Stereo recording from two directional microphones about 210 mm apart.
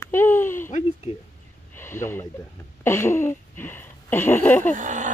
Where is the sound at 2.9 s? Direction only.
10° left (ahead or behind).